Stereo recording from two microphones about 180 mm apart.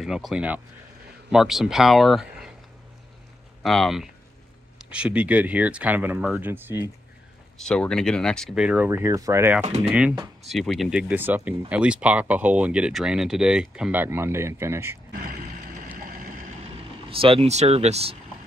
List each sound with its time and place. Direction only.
0.0 s speech: 5° right (ahead or behind)
3.6 s speech: centre (ahead or behind)
7.5 s speech: 5° left (ahead or behind); by 9.7 s 10° right (ahead or behind)
10.4 s speech: centre (ahead or behind)
15.2 s vehicle: 50° right (ahead or behind)
17.1 s speech: 30° right (ahead or behind)